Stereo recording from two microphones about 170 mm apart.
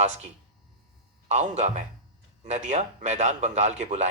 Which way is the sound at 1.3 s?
40° right (ahead or behind).